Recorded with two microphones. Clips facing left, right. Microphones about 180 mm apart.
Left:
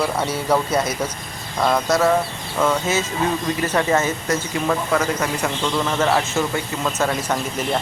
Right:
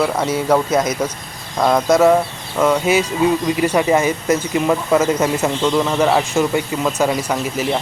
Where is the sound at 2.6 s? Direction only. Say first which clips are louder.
Right 5 dB; 10° right (ahead or behind).